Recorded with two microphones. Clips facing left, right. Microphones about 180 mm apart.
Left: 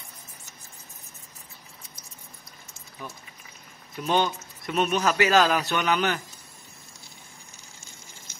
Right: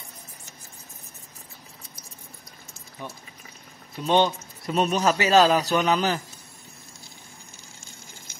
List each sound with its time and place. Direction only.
4.0 s a man's voice: 30° right (ahead or behind)